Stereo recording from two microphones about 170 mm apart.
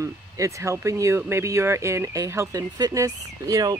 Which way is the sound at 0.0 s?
20° right (ahead or behind).